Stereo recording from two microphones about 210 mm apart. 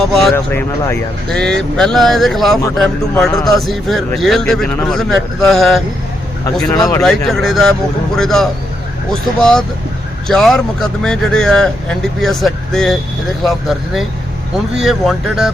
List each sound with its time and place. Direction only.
0.0 s speech: centre (ahead or behind)
6.7 s speech: 15° left (ahead or behind)
7.3 s speech: centre (ahead or behind)